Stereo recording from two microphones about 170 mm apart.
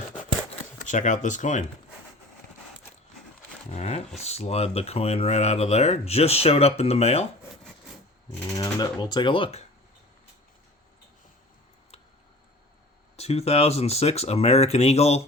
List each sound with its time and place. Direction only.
0.8 s speech: 45° left (ahead or behind)
3.7 s speech: 40° left (ahead or behind)
8.5 s speech: 25° left (ahead or behind)
13.1 s speech: 35° left (ahead or behind)